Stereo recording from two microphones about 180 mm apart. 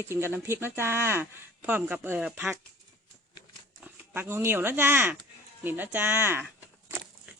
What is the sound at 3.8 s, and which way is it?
Speech, 10° right (ahead or behind).